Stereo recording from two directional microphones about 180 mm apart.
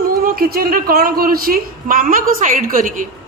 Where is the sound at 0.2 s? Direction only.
55° right (ahead or behind).